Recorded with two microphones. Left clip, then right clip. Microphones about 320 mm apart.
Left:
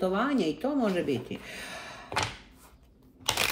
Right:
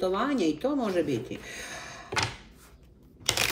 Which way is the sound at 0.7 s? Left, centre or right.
Centre.